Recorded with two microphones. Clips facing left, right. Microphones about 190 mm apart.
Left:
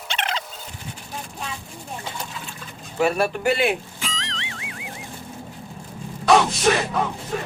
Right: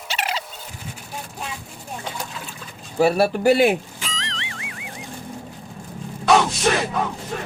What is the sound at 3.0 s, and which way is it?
Speech, 35° right (ahead or behind).